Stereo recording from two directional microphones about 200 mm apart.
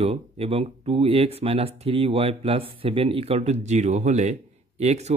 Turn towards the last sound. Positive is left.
turn(degrees=-35)  # may be behind; listen again after turning